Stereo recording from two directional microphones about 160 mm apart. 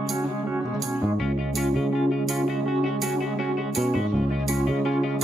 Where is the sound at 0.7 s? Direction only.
Centre (ahead or behind).